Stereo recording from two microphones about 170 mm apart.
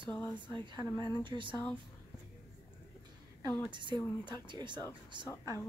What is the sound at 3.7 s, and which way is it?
Speech, 25° right (ahead or behind).